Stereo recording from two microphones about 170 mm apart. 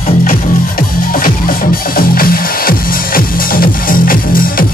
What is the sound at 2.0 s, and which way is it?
Music, 60° left (ahead or behind).